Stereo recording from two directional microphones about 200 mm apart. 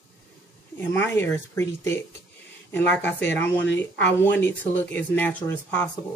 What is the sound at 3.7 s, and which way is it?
Speech, 60° left (ahead or behind).